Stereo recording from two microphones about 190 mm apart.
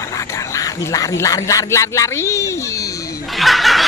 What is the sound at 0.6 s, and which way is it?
Speech, 15° left (ahead or behind).